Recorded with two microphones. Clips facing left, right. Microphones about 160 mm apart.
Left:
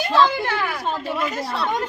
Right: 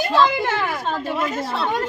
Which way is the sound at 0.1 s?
20° right (ahead or behind).